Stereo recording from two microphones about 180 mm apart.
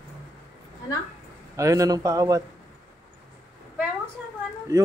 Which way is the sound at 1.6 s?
20° right (ahead or behind).